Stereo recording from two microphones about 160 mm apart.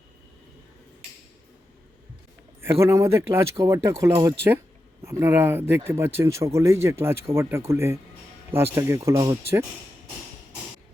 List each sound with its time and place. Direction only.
2.8 s speech: 20° right (ahead or behind)